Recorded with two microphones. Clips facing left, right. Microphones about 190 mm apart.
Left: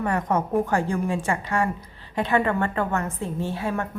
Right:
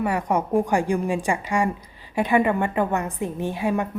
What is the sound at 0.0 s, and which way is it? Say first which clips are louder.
A woman's voice: right 1 dB; 10° right (ahead or behind).